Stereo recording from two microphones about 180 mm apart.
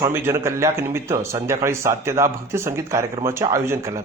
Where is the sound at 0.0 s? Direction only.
15° right (ahead or behind).